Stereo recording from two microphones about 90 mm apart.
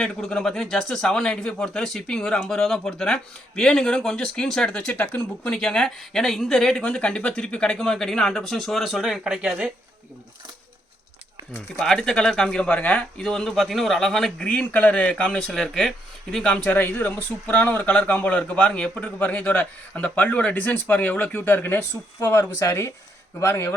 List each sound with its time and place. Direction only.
0.0 s speech: 5° left (ahead or behind); by 9.7 s 10° right (ahead or behind)
11.8 s speech: 5° left (ahead or behind); by 23.7 s 25° left (ahead or behind)